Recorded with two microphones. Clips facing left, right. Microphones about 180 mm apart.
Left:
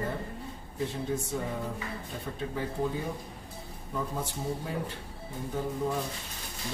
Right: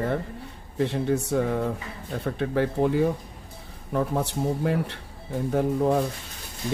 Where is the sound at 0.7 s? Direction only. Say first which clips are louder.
Right 8 dB; 70° right (ahead or behind).